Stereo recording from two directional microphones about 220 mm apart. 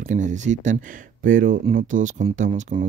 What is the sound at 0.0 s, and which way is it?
Speech, 35° right (ahead or behind).